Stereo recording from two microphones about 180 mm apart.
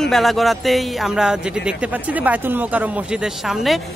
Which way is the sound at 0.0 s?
Centre (ahead or behind).